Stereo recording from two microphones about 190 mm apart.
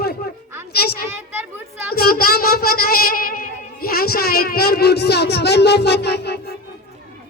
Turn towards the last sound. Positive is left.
turn(degrees=60)  # may be behind; listen again after turning